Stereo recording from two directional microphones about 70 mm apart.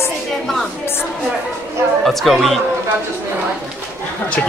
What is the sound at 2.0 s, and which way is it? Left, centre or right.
Speech, centre.